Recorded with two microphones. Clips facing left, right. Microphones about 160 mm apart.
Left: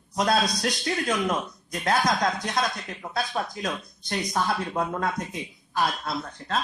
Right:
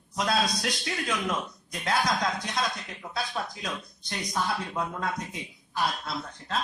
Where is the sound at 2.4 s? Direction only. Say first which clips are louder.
Left 4 dB; 50° left (ahead or behind).